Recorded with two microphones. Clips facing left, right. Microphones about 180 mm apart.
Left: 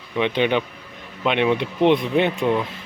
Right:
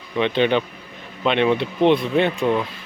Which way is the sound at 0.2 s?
15° left (ahead or behind).